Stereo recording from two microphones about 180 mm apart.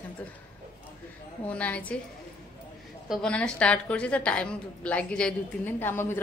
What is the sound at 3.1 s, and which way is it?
A woman's voice, 5° left (ahead or behind).